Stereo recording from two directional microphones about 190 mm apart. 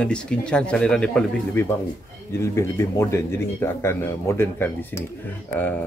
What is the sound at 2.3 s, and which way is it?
Speech, 15° left (ahead or behind).